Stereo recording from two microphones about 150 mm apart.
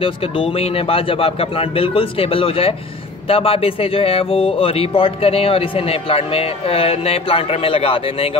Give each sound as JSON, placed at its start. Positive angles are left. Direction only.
{"t": 0.0, "sound": "speech", "side_deg": 35}